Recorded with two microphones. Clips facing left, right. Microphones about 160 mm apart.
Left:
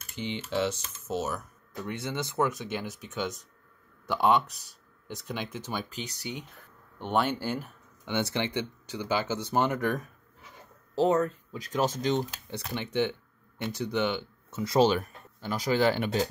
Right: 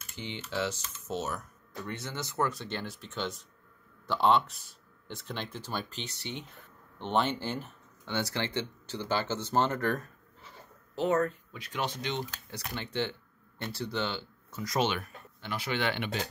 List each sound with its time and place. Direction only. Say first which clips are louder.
0.1 s typing: left 6 dB; 20° left (ahead or behind)
0.5 s speech: left 4 dB; 20° left (ahead or behind)
1.0 s speech: left 3 dB; 5° left (ahead or behind)
1.9 s speech: left 5 dB; 20° left (ahead or behind)
8.1 s speech: left 3 dB; 20° left (ahead or behind)
11.5 s speech: left 6 dB; 40° left (ahead or behind)
12.7 s speech: left 5 dB; 15° left (ahead or behind)
14.6 s speech: left 7 dB; 30° left (ahead or behind)